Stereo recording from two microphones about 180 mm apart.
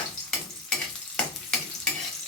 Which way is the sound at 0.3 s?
5° left (ahead or behind).